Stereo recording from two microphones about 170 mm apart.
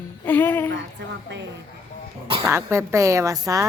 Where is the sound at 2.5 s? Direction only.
15° right (ahead or behind).